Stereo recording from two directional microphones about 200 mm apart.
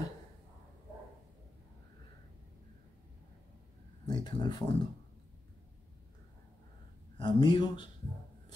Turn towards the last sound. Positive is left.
turn(degrees=25)  # may be behind; listen again after turning